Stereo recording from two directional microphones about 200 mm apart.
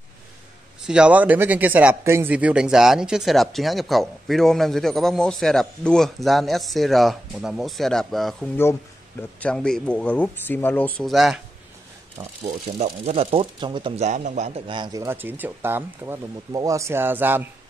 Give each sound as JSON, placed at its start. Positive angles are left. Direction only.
{"t": 0.8, "sound": "speech", "side_deg": -5}
{"t": 12.6, "sound": "speech", "side_deg": -35}